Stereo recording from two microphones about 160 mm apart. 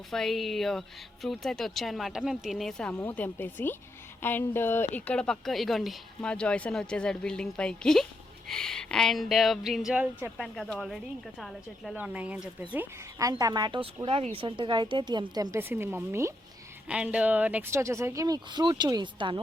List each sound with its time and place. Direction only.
0.1 s a woman's voice: centre (ahead or behind)
10.3 s a woman's voice: centre (ahead or behind)
13.1 s speech: 20° right (ahead or behind)